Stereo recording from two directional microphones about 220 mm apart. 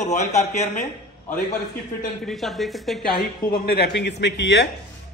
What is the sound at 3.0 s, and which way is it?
A man's voice, 40° left (ahead or behind).